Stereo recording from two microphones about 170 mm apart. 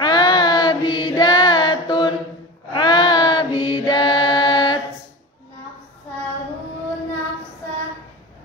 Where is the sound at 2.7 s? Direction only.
25° left (ahead or behind).